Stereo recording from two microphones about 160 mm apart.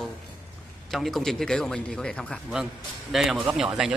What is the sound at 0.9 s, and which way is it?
A man's voice, centre (ahead or behind).